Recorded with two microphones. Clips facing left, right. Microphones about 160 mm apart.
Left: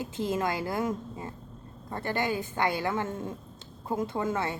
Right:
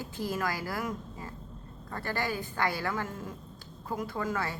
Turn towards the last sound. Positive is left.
turn(degrees=25)  # may be behind; listen again after turning